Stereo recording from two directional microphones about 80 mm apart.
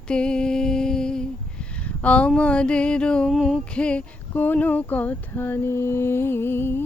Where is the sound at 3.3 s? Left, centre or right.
Centre.